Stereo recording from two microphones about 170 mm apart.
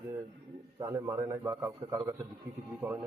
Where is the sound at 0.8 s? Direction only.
15° right (ahead or behind).